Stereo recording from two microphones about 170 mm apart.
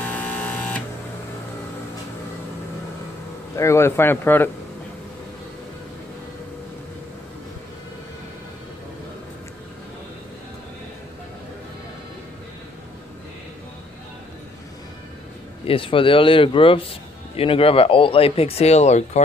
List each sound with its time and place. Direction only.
0.1 s printer: 10° left (ahead or behind)
3.5 s speech: 15° left (ahead or behind)
15.6 s speech: 30° left (ahead or behind)